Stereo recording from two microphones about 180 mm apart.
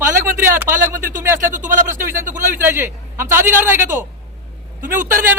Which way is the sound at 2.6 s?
15° right (ahead or behind).